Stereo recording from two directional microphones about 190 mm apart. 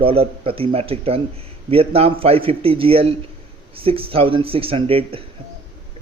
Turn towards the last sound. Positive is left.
turn(degrees=-30)  # may be behind; listen again after turning